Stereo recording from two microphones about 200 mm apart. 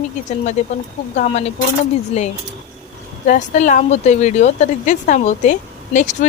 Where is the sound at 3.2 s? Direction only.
45° left (ahead or behind).